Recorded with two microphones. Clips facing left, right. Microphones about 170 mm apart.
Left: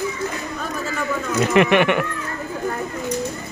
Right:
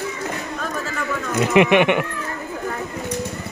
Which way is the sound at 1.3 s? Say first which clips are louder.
Right 1 dB; 15° right (ahead or behind).